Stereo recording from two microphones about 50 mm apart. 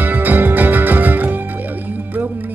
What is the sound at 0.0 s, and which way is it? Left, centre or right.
Music, right.